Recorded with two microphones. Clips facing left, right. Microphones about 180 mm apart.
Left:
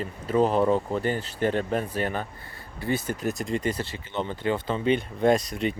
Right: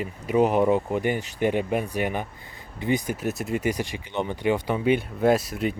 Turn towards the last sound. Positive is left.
turn(degrees=-5)  # may be behind; listen again after turning